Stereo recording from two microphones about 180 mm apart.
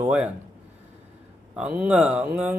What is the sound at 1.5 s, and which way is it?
A man's voice, 5° right (ahead or behind).